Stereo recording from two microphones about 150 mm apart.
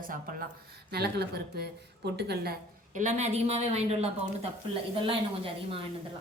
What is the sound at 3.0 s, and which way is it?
A woman's voice, 50° right (ahead or behind).